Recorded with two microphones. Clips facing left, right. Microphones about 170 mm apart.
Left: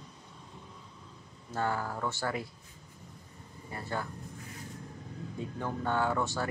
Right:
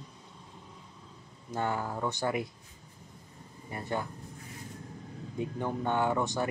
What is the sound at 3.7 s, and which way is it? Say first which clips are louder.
Speech: right 2 dB; 20° right (ahead or behind).